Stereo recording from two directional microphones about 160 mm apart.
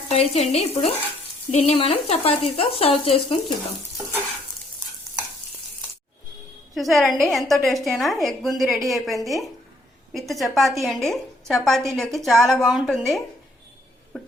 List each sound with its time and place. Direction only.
0.1 s speech: 40° left (ahead or behind)
6.7 s a woman's voice: centre (ahead or behind)